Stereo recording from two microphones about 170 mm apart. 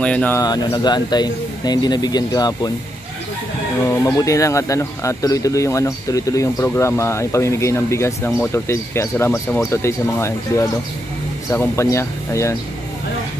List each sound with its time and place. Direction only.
0.0 s speech: 10° left (ahead or behind)
0.4 s speech: 25° left (ahead or behind)
4.0 s speech: 20° left (ahead or behind)